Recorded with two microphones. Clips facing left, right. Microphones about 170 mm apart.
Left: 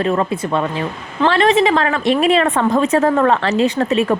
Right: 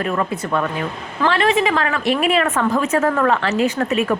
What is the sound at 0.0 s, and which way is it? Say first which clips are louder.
A woman's voice: left 4 dB; 30° left (ahead or behind).